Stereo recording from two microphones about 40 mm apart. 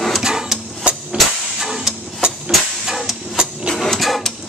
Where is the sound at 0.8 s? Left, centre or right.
Right.